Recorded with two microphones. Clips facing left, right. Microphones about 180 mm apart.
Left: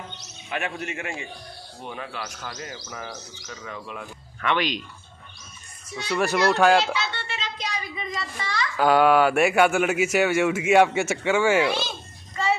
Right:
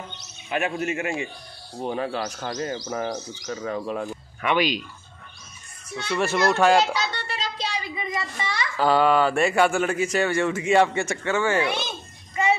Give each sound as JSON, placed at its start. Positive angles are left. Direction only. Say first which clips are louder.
{"t": 0.5, "sound": "speech", "louder": "right 5 dB", "side_deg": -5}
{"t": 1.8, "sound": "speech", "louder": "right 8 dB", "side_deg": -35}
{"t": 4.4, "sound": "speech", "louder": "right 2 dB", "side_deg": -10}
{"t": 6.0, "sound": "speech", "louder": "even", "side_deg": 0}
{"t": 6.9, "sound": "child singing", "louder": "right 1 dB", "side_deg": -40}
{"t": 8.7, "sound": "speech", "louder": "left 2 dB", "side_deg": 5}
{"t": 11.6, "sound": "a child's voice", "louder": "left 2 dB", "side_deg": -20}
{"t": 12.4, "sound": "child singing", "louder": "right 2 dB", "side_deg": -15}